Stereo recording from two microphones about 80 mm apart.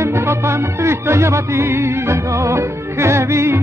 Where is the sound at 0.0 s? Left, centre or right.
Right.